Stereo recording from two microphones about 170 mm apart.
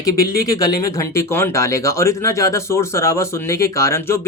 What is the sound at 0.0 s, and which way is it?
Speech, 20° left (ahead or behind).